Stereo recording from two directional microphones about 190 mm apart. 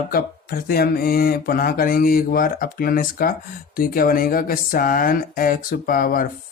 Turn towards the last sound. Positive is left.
turn(degrees=50)  # may be behind; listen again after turning